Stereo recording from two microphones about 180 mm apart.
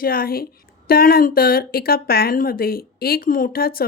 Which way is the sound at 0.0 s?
55° left (ahead or behind).